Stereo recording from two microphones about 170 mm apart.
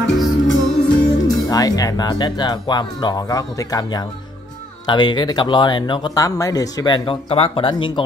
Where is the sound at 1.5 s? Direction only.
20° left (ahead or behind).